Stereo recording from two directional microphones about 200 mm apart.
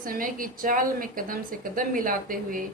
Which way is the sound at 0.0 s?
45° right (ahead or behind).